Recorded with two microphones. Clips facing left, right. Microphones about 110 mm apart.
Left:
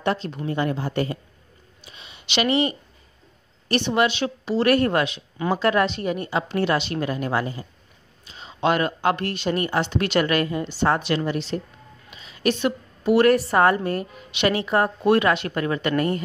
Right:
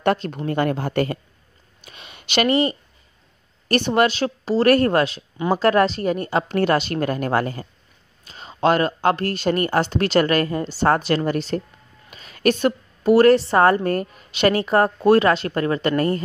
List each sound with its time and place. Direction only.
0.0 s a woman's voice: 55° right (ahead or behind); by 13.7 s 30° right (ahead or behind)
13.8 s speech: 45° right (ahead or behind)